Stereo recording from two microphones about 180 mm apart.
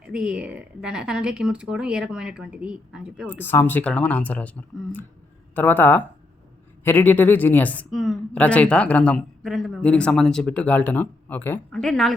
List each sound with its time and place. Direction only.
0.0 s speech: 5° right (ahead or behind)
3.4 s speech: 10° left (ahead or behind)